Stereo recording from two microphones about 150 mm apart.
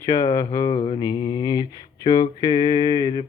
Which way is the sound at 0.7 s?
35° left (ahead or behind).